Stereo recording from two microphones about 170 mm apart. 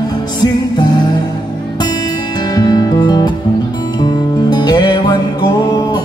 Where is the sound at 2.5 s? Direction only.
25° left (ahead or behind).